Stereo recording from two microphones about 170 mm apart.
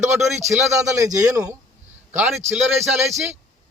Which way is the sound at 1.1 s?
20° right (ahead or behind).